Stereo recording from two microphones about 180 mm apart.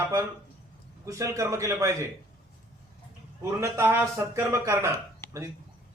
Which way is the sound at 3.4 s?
15° right (ahead or behind).